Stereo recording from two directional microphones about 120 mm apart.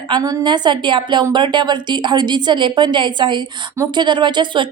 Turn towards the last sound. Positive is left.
turn(degrees=-40)  # may be behind; listen again after turning